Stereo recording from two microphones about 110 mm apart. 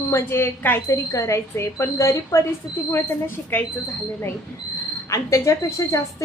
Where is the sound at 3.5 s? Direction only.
15° left (ahead or behind).